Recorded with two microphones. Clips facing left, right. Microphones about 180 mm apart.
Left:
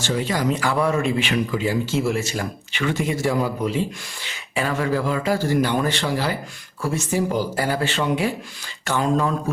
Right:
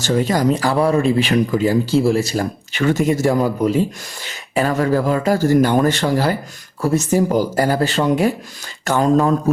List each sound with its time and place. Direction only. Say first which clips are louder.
0.0 s speech: right 6 dB; 45° right (ahead or behind)